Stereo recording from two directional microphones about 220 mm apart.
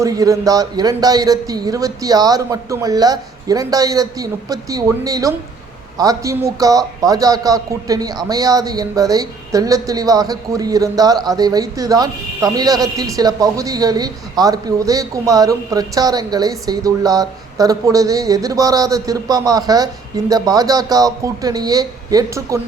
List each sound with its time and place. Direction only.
0.0 s a man's voice: 15° right (ahead or behind)